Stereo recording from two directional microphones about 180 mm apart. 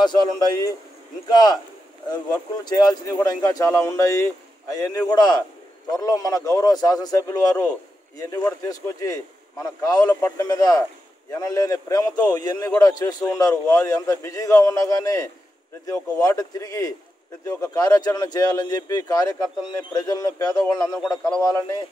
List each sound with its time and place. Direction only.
0.0 s speech: 25° left (ahead or behind)